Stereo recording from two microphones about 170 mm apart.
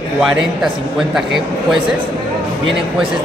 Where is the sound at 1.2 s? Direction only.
Centre (ahead or behind).